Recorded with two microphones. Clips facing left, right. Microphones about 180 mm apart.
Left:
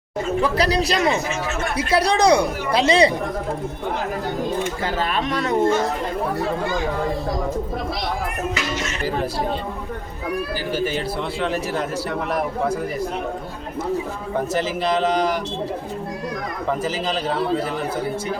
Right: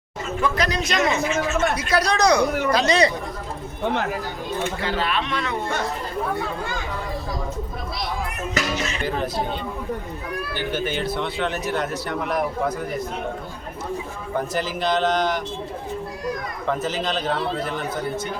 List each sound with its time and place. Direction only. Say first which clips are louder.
0.4 s speech: left 2 dB; 35° left (ahead or behind)
4.8 s a man's voice: left 1 dB; 45° left (ahead or behind)
10.7 s speech: left 1 dB; 5° left (ahead or behind)
14.8 s a man's voice: even; 5° left (ahead or behind)
16.6 s a man's voice: even; 5° left (ahead or behind)